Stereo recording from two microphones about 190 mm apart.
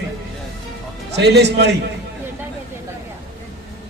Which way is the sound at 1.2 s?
60° right (ahead or behind).